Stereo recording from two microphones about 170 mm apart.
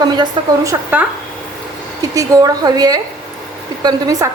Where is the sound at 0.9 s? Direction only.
10° right (ahead or behind).